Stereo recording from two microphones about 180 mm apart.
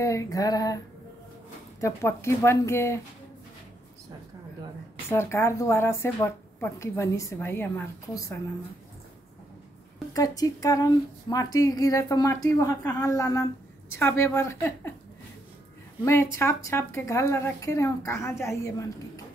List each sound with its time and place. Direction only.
0.0 s speech: 20° left (ahead or behind)
1.8 s a woman's voice: 15° left (ahead or behind)
5.1 s a woman's voice: 15° left (ahead or behind)
10.1 s a woman's voice: 20° left (ahead or behind)
16.3 s a woman's voice: 15° left (ahead or behind)